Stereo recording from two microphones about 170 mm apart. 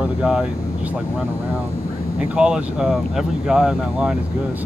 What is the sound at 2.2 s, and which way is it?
Speech, 5° right (ahead or behind).